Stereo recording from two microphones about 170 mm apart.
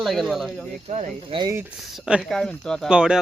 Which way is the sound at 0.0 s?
Centre (ahead or behind).